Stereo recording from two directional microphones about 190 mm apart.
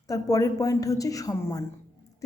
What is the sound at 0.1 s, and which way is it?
Speech, 20° left (ahead or behind).